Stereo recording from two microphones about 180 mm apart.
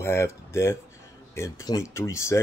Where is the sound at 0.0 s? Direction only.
15° left (ahead or behind).